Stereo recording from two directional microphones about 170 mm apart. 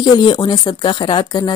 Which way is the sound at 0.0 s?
25° left (ahead or behind).